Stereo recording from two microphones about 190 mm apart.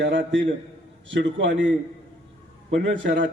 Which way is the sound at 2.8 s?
70° right (ahead or behind).